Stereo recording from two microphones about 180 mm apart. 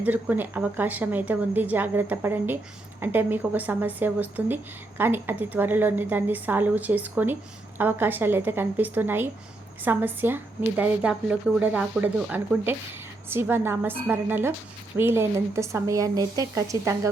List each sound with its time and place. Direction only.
0.0 s a woman's voice: 10° right (ahead or behind)